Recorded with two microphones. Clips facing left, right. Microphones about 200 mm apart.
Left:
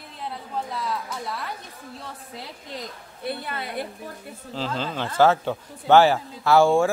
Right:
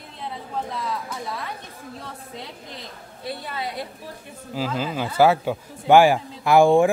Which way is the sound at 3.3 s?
60° left (ahead or behind).